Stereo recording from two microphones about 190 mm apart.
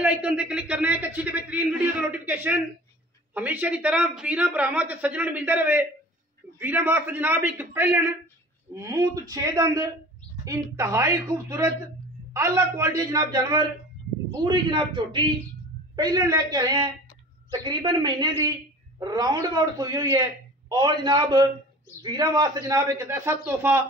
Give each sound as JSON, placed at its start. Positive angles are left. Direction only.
{"t": 0.0, "sound": "a man's voice", "side_deg": -5}